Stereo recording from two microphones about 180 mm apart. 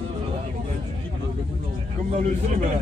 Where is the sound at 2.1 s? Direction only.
40° right (ahead or behind).